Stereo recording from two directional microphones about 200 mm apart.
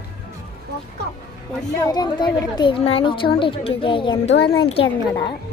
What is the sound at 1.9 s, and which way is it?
A woman's voice, 20° left (ahead or behind).